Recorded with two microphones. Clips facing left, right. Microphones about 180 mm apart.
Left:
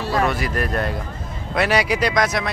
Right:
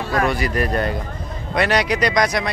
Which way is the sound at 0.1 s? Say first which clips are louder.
Right 1 dB; centre (ahead or behind).